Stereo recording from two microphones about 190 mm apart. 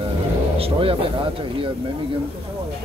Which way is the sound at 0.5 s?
30° right (ahead or behind).